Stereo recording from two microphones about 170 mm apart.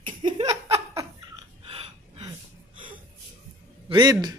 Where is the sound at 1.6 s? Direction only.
35° right (ahead or behind).